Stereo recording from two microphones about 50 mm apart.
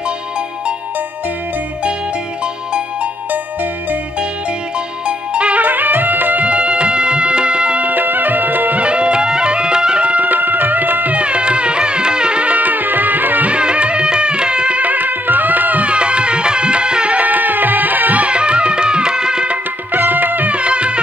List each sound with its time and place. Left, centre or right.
5.0 s music: right
5.6 s music: right
6.4 s music: right
7.9 s music: right
8.8 s music: right
11.1 s music: right
13.5 s music: right
19.9 s music: right
20.5 s music: right